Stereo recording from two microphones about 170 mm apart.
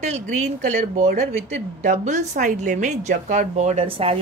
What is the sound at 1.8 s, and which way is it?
A woman's voice, 45° right (ahead or behind).